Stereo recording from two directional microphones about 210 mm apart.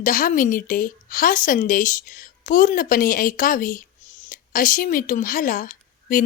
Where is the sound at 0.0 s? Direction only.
40° left (ahead or behind).